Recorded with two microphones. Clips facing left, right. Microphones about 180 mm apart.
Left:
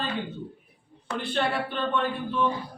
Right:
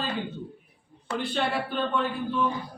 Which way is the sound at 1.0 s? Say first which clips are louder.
Even; centre (ahead or behind).